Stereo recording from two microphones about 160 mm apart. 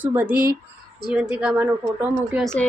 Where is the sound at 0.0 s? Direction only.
10° right (ahead or behind).